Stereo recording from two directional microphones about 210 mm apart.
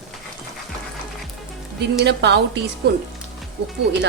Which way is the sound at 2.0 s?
55° right (ahead or behind).